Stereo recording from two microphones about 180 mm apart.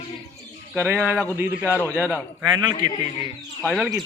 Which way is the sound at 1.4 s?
10° right (ahead or behind).